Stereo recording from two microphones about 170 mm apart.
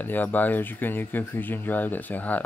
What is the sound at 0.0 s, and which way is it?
Speech, 10° left (ahead or behind).